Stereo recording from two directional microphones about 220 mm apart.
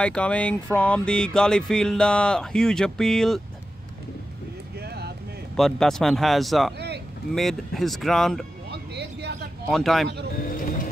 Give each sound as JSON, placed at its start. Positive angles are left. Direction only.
{"t": 0.0, "sound": "speech", "side_deg": 5}
{"t": 4.7, "sound": "vehicle", "side_deg": -45}
{"t": 5.6, "sound": "speech", "side_deg": 0}
{"t": 8.6, "sound": "vehicle", "side_deg": -50}
{"t": 9.7, "sound": "speech", "side_deg": 0}
{"t": 10.3, "sound": "vehicle", "side_deg": 40}